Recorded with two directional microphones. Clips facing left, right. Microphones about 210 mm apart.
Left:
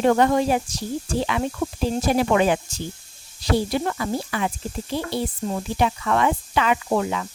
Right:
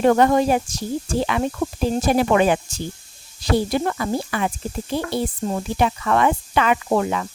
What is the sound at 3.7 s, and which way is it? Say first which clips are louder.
Speech: right 2 dB; 50° right (ahead or behind).